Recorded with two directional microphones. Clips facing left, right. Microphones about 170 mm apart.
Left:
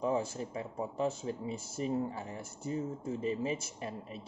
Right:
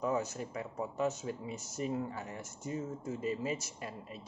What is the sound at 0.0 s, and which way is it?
Speech, 30° left (ahead or behind).